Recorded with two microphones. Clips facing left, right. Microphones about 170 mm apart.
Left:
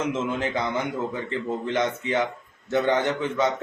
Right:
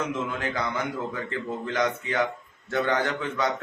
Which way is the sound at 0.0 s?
20° left (ahead or behind).